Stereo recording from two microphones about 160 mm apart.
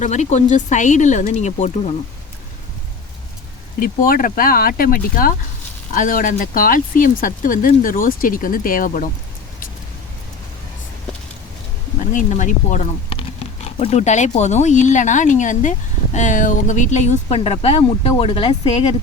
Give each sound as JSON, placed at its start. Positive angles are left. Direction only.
{"t": 0.0, "sound": "speech", "side_deg": 45}
{"t": 3.8, "sound": "speech", "side_deg": 60}
{"t": 12.1, "sound": "speech", "side_deg": 50}
{"t": 13.1, "sound": "speech", "side_deg": 35}